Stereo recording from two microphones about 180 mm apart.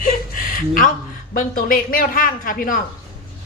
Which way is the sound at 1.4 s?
50° left (ahead or behind).